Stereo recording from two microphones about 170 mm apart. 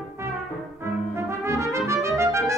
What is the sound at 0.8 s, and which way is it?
Trumpet, 15° right (ahead or behind).